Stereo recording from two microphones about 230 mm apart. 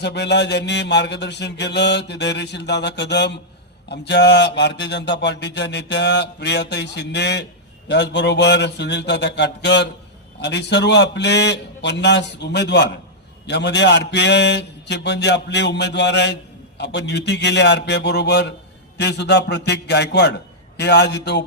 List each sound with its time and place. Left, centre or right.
0.0 s speech: left